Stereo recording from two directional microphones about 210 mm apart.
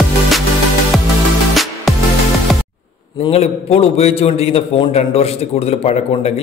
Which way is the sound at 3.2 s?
30° left (ahead or behind).